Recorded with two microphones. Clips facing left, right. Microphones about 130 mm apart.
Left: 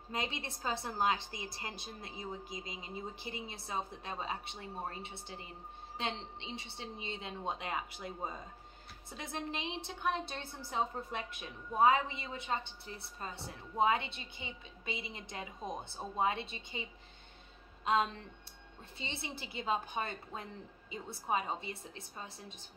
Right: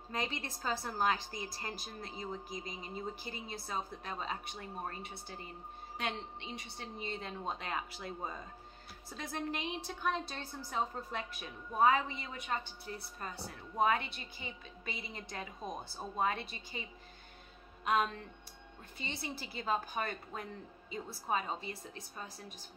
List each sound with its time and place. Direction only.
0.1 s a woman's voice: 20° left (ahead or behind)
17.8 s a woman's voice: 25° left (ahead or behind)